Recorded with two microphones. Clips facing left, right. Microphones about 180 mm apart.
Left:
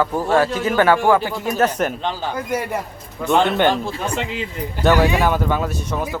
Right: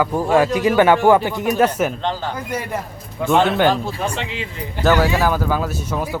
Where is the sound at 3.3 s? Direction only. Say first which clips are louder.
Right 1 dB; 5° right (ahead or behind).